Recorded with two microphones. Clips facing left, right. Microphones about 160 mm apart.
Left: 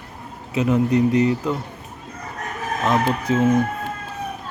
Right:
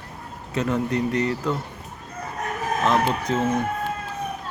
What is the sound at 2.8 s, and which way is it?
Speech, 10° left (ahead or behind).